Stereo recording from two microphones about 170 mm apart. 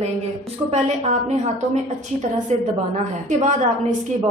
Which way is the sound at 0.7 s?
40° right (ahead or behind).